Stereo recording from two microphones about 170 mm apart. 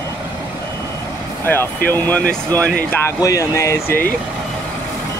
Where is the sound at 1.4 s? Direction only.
15° left (ahead or behind).